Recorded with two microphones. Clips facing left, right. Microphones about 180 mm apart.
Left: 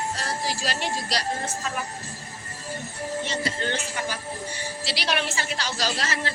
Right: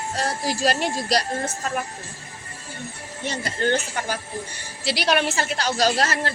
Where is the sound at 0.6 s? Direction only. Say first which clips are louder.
Right 6 dB; 45° right (ahead or behind).